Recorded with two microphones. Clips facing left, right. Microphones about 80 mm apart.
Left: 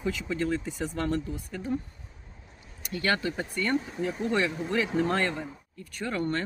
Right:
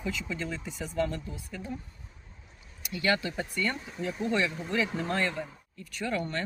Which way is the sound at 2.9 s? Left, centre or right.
Left.